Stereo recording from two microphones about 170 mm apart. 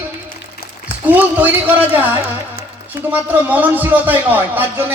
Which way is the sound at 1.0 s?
10° right (ahead or behind).